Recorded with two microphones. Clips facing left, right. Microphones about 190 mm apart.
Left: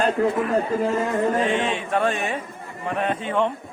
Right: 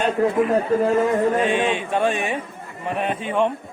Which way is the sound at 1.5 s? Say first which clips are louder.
Right 2 dB; 15° right (ahead or behind).